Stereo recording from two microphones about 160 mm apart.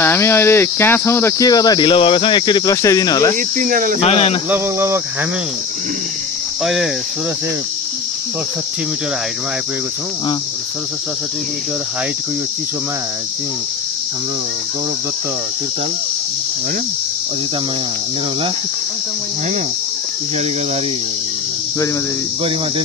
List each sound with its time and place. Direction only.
0.0 s speech: 15° left (ahead or behind)
3.3 s speech: 55° right (ahead or behind)
4.0 s speech: 40° left (ahead or behind)
4.5 s speech: 15° right (ahead or behind)
6.6 s speech: centre (ahead or behind)